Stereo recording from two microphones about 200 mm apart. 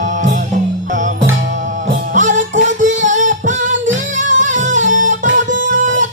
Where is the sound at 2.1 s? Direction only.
40° right (ahead or behind).